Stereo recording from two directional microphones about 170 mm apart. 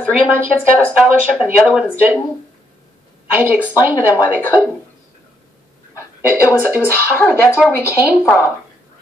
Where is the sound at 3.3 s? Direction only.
10° right (ahead or behind).